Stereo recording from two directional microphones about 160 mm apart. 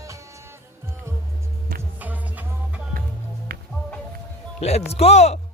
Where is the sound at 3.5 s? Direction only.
65° right (ahead or behind).